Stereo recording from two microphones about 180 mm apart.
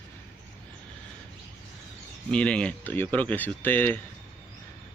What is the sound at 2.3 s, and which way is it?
Speech, 5° left (ahead or behind).